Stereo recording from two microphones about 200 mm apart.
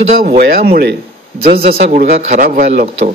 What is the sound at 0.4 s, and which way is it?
Speech, 55° right (ahead or behind).